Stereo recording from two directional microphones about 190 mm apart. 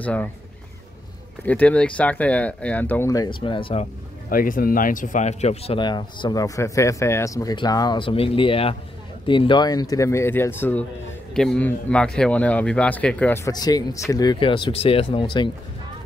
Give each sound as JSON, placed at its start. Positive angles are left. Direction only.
{"t": 0.0, "sound": "speech", "side_deg": 10}
{"t": 1.4, "sound": "speech", "side_deg": 10}
{"t": 4.3, "sound": "speech", "side_deg": 50}